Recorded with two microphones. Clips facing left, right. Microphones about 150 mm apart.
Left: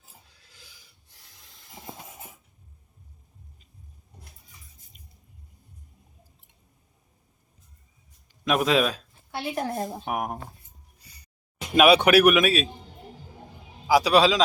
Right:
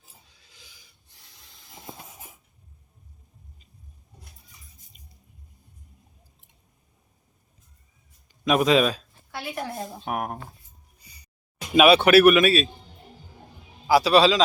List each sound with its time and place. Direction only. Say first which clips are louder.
1.1 s a sound: right 1 dB; 5° left (ahead or behind)
8.4 s speech: right 3 dB; centre (ahead or behind)
9.6 s a woman's voice: left 4 dB; 45° left (ahead or behind)
10.0 s speech: even; 10° left (ahead or behind)
11.7 s speech: right 1 dB; centre (ahead or behind)
11.9 s speech: right 3 dB; 10° left (ahead or behind)
13.8 s speech: right 1 dB; 10° left (ahead or behind)